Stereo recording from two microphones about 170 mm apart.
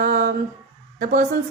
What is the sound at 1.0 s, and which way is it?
Speech, 55° right (ahead or behind).